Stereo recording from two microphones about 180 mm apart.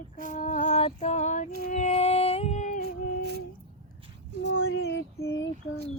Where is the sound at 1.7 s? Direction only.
40° left (ahead or behind).